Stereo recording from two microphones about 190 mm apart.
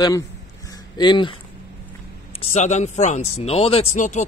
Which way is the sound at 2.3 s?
35° left (ahead or behind).